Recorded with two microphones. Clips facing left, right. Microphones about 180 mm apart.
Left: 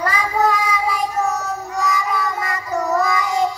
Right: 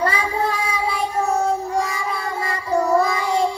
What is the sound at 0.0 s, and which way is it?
Child singing, 30° right (ahead or behind).